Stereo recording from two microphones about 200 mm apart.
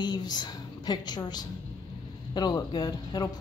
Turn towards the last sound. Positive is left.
turn(degrees=20)  # may be behind; listen again after turning